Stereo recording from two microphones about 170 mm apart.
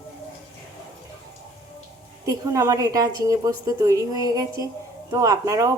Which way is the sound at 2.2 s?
20° right (ahead or behind).